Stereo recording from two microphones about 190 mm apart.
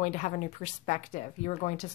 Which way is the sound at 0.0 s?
40° left (ahead or behind).